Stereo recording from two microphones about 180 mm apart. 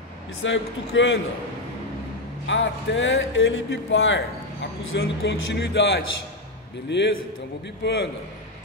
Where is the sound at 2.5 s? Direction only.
90° left.